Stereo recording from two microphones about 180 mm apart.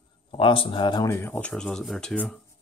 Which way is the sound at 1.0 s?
15° left (ahead or behind).